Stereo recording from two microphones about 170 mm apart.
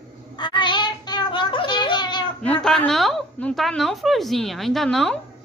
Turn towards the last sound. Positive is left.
turn(degrees=0)  # may be behind; listen again after turning